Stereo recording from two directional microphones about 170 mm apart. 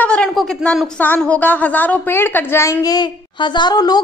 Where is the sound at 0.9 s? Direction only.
10° left (ahead or behind).